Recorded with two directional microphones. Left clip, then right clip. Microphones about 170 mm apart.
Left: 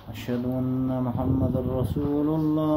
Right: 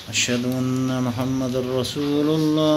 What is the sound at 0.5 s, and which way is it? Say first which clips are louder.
Music: right 4 dB; 5° right (ahead or behind).